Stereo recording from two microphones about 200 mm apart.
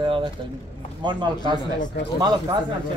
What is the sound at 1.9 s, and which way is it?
Speech, 55° left (ahead or behind).